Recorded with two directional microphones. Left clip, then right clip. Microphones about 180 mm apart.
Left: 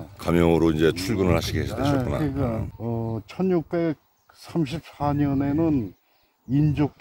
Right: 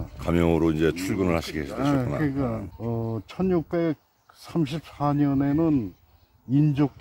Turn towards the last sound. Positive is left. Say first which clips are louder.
# even
turn(degrees=-5)  # may be behind; listen again after turning